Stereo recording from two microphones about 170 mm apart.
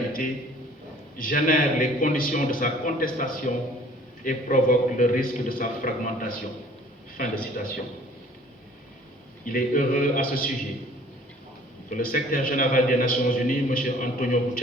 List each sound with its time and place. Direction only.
1.2 s a man's voice: 55° left (ahead or behind)
9.5 s a man's voice: 55° left (ahead or behind)
11.9 s a man's voice: 55° left (ahead or behind)